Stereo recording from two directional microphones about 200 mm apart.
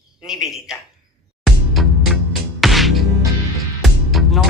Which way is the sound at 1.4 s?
Centre (ahead or behind).